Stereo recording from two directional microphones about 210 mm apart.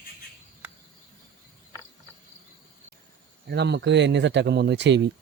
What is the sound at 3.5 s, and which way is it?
Speech, 55° right (ahead or behind).